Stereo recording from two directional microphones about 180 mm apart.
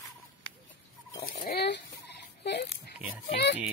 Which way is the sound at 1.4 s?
65° left (ahead or behind).